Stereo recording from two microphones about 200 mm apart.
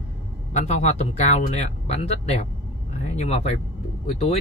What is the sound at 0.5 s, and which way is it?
Speech, 35° left (ahead or behind).